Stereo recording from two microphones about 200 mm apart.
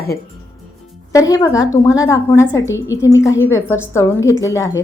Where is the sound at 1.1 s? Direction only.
15° left (ahead or behind).